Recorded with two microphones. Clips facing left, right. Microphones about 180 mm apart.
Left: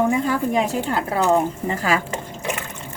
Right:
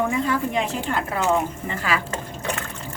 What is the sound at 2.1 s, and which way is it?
Liquid, 10° left (ahead or behind).